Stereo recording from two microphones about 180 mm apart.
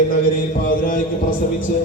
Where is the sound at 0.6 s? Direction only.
50° left (ahead or behind).